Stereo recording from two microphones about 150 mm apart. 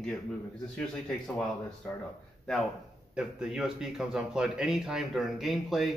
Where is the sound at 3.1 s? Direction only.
5° right (ahead or behind).